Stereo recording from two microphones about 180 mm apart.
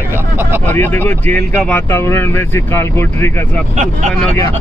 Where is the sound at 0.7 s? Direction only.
10° left (ahead or behind).